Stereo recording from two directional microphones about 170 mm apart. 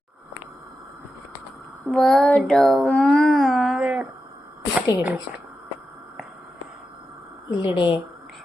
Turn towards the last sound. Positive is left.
turn(degrees=30)  # may be behind; listen again after turning